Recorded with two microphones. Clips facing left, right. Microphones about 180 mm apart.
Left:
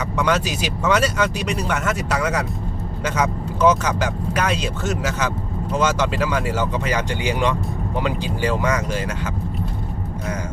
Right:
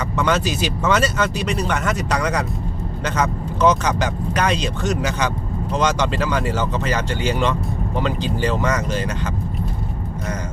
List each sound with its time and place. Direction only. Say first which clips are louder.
0.2 s speech: right 1 dB; 10° left (ahead or behind)